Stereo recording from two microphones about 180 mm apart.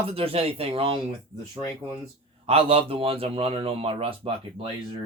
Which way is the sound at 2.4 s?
35° right (ahead or behind).